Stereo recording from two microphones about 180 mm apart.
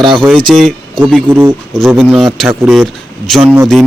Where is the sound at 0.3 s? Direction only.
5° left (ahead or behind).